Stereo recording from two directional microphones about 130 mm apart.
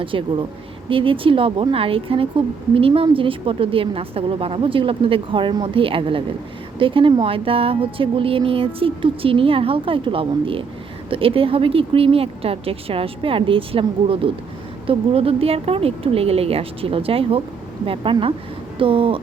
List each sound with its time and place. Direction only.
0.0 s a woman's voice: 40° right (ahead or behind)